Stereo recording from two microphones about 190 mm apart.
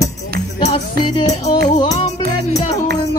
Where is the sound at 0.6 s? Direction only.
30° left (ahead or behind).